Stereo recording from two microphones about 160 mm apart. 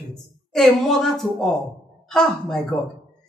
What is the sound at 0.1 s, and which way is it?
Speech, 5° left (ahead or behind).